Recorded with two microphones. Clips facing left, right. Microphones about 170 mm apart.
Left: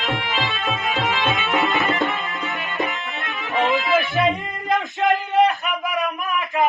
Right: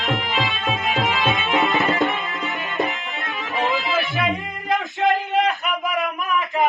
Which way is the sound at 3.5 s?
20° left (ahead or behind).